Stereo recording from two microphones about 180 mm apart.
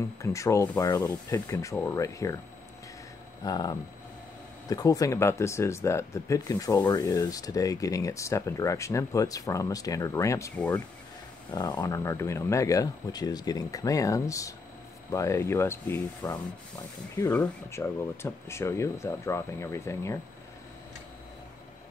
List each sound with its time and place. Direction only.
0.2 s speech: 15° left (ahead or behind)
3.4 s speech: 20° left (ahead or behind)